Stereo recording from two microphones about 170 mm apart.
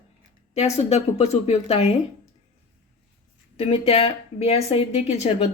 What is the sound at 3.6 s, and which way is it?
Speech, 35° left (ahead or behind).